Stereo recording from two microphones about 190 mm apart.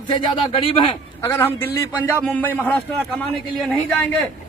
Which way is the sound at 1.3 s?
15° left (ahead or behind).